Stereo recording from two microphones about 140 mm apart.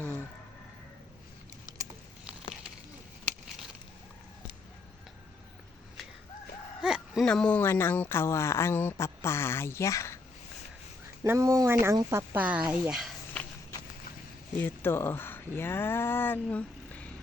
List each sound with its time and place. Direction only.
6.8 s a sound: 5° right (ahead or behind)
7.3 s speech: 10° left (ahead or behind)
11.2 s speech: 20° right (ahead or behind); by 13.1 s 5° right (ahead or behind)
14.6 s speech: 15° left (ahead or behind)